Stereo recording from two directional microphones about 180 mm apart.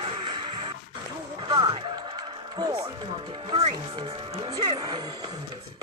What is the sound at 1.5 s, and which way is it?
Music, 25° right (ahead or behind).